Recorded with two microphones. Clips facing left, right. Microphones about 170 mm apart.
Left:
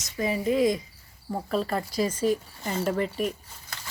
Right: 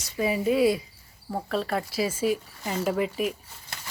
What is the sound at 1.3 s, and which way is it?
Speech, centre (ahead or behind).